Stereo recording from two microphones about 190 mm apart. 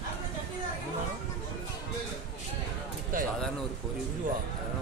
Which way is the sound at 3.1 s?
45° right (ahead or behind).